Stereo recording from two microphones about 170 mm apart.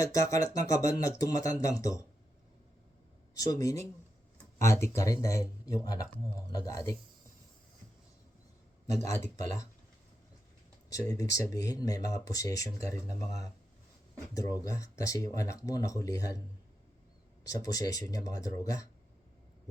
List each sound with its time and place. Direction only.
0.0 s speech: 20° left (ahead or behind)
3.3 s speech: 20° left (ahead or behind)
10.8 s speech: 20° left (ahead or behind)
14.3 s speech: 20° left (ahead or behind)
17.4 s speech: 20° left (ahead or behind)